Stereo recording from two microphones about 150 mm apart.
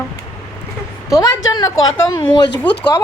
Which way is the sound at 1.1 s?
20° left (ahead or behind).